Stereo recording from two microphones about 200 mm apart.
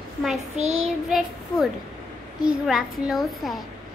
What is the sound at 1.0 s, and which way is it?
Speech, centre (ahead or behind).